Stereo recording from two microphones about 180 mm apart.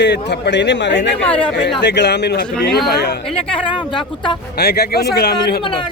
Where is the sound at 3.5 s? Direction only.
25° left (ahead or behind).